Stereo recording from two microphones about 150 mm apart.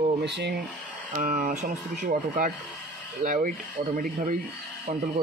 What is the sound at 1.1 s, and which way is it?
Speech, 55° right (ahead or behind).